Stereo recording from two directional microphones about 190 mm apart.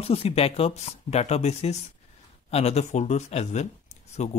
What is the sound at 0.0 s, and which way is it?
Speech, 30° left (ahead or behind).